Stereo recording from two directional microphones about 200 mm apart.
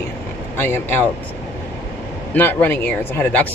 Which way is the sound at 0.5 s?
10° left (ahead or behind).